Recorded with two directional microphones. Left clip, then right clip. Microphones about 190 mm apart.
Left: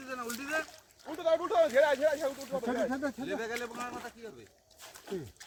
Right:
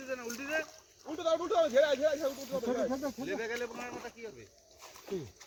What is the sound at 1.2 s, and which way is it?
Speech, 60° right (ahead or behind).